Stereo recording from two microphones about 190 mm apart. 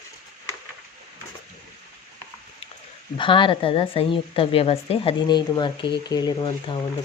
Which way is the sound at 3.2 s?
25° left (ahead or behind).